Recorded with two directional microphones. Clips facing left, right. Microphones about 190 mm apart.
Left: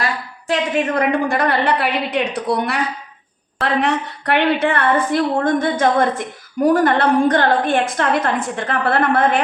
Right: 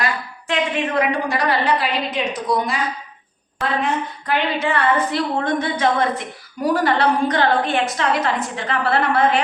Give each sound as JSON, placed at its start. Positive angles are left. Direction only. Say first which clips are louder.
{"t": 0.4, "sound": "a woman's voice", "louder": "left 3 dB", "side_deg": 40}